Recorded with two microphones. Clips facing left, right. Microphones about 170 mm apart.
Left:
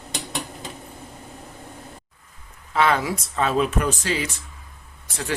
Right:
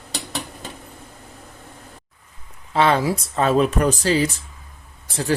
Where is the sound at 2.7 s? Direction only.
30° right (ahead or behind).